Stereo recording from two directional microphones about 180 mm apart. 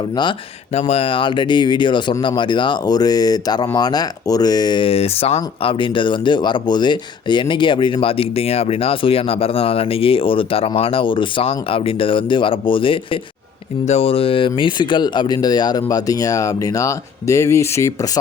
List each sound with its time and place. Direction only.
0.7 s speech: 35° left (ahead or behind); by 18.2 s 20° left (ahead or behind)